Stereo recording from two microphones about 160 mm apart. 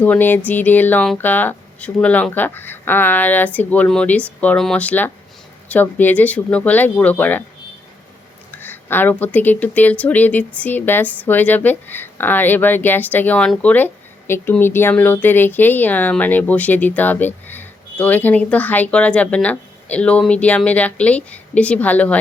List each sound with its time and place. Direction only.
0.0 s speech: 10° left (ahead or behind)
8.6 s speech: 15° left (ahead or behind)